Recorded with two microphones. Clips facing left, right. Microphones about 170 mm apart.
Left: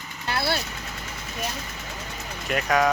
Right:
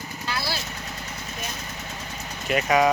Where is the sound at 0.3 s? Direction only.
60° left (ahead or behind).